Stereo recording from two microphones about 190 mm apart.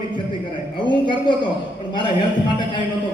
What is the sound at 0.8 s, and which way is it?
Speech, 25° left (ahead or behind).